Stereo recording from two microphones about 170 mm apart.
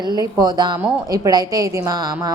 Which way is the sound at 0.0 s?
25° right (ahead or behind).